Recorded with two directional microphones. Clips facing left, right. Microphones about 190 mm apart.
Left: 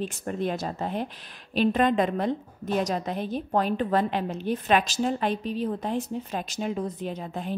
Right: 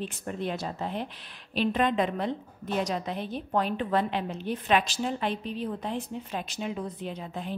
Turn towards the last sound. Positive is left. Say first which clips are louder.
# left 3 dB
turn(degrees=45)  # may be behind; listen again after turning